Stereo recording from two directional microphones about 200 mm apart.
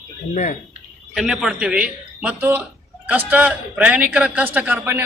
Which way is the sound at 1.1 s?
Centre (ahead or behind).